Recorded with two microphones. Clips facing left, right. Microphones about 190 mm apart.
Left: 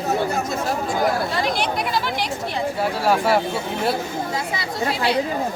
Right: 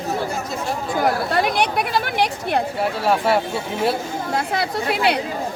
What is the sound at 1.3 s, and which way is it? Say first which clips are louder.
Speech: right 3 dB; 60° right (ahead or behind).